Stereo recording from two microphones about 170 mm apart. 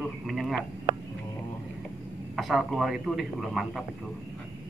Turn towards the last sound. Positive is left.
turn(degrees=0)  # may be behind; listen again after turning